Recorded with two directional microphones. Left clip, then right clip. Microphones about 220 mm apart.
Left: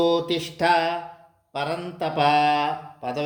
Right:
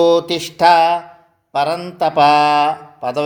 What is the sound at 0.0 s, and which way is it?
Mantra, 30° right (ahead or behind).